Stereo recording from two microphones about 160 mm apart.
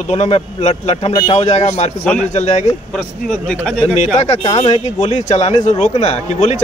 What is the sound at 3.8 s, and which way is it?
A man's voice, 45° left (ahead or behind).